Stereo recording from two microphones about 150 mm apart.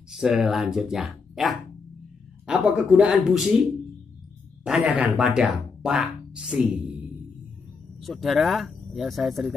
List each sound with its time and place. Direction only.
0.1 s speech: 5° right (ahead or behind)
4.6 s speech: 10° right (ahead or behind)
8.0 s speech: centre (ahead or behind)